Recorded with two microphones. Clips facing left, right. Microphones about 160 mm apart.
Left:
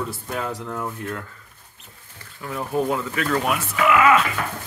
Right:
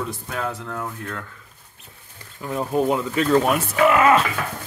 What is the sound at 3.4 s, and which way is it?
Speech, 35° right (ahead or behind).